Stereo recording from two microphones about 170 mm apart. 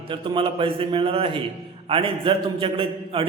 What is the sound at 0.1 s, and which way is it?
A man's voice, 30° right (ahead or behind).